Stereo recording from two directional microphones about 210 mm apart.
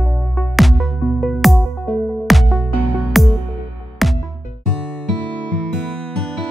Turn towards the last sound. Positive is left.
turn(degrees=5)  # may be behind; listen again after turning